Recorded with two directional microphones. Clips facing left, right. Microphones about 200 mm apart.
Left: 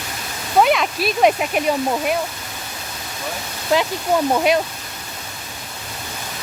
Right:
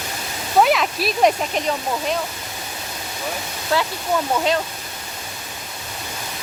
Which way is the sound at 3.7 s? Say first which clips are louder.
Left 3 dB; 15° left (ahead or behind).